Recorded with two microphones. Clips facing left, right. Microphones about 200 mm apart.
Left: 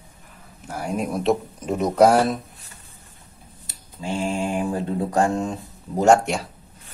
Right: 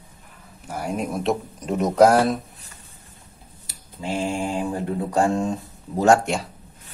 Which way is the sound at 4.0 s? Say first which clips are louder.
Even; 25° right (ahead or behind).